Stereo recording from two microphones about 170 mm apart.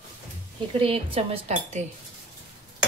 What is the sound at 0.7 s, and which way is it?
Speech, 30° right (ahead or behind).